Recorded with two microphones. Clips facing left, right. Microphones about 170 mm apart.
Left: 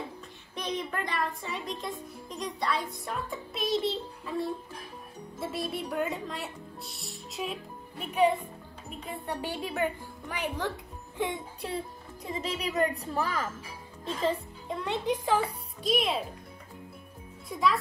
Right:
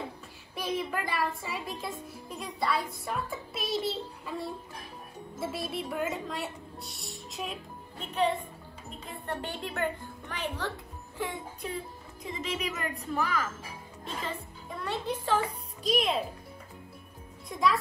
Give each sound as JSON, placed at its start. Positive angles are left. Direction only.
{"t": 0.6, "sound": "a child's voice", "side_deg": 0}
{"t": 8.0, "sound": "speech", "side_deg": 10}
{"t": 11.1, "sound": "music", "side_deg": 20}
{"t": 11.6, "sound": "a woman's voice", "side_deg": 35}
{"t": 14.7, "sound": "speech", "side_deg": 20}
{"t": 15.8, "sound": "a child's voice", "side_deg": 0}
{"t": 17.5, "sound": "a child's voice", "side_deg": 0}